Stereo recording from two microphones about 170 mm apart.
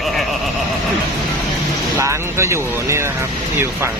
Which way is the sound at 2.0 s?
15° right (ahead or behind).